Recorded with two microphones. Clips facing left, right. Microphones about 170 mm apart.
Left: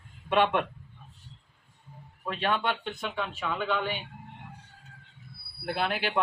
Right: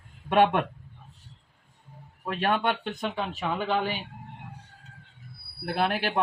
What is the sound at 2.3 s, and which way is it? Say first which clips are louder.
Speech: right 3 dB; 45° right (ahead or behind).